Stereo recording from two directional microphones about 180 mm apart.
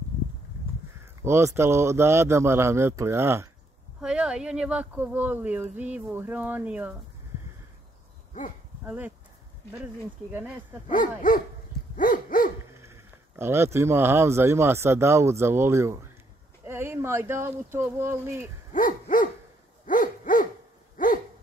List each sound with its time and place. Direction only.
1.2 s speech: 15° right (ahead or behind)
8.8 s speech: 10° right (ahead or behind)
10.3 s speech: 10° right (ahead or behind)
10.9 s speech: 50° left (ahead or behind)
12.0 s dog: 50° left (ahead or behind)
12.8 s speech: 15° right (ahead or behind)
18.7 s owl: 45° left (ahead or behind)
19.9 s a sound: 50° left (ahead or behind)
21.0 s dog: 50° left (ahead or behind)